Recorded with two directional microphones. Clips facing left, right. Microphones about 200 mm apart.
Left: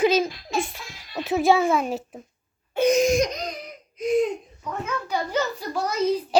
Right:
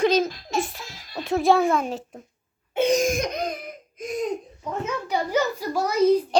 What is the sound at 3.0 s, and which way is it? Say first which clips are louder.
Laughter: left 3 dB; 55° right (ahead or behind).